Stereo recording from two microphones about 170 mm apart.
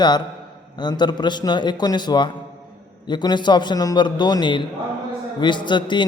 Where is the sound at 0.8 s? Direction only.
25° left (ahead or behind).